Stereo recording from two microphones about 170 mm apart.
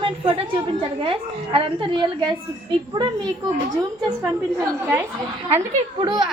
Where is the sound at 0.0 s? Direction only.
30° right (ahead or behind).